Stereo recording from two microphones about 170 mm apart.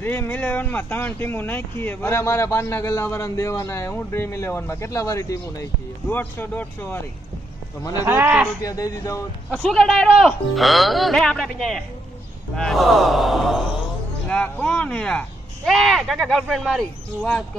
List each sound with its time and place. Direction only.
0.0 s speech: 10° left (ahead or behind)
8.0 s speech: 10° right (ahead or behind)
8.6 s a man's voice: 20° left (ahead or behind)
9.5 s speech: 5° left (ahead or behind)